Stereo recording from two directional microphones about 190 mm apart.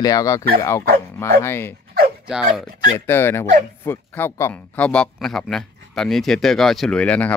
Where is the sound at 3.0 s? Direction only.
15° left (ahead or behind).